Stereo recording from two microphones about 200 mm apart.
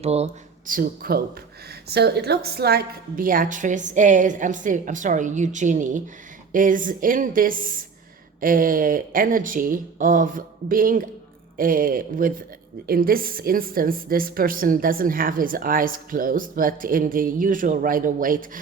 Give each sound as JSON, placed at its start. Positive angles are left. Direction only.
{"t": 0.0, "sound": "a woman's voice", "side_deg": -30}
{"t": 0.7, "sound": "a woman's voice", "side_deg": -45}